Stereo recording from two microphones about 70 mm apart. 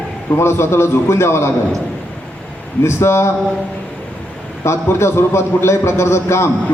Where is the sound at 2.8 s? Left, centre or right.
Left.